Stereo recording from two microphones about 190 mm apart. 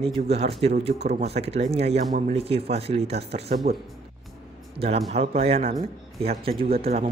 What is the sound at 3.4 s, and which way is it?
Speech, 55° right (ahead or behind).